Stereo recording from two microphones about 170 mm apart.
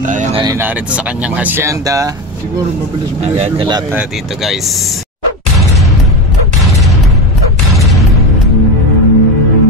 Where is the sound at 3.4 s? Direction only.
30° right (ahead or behind).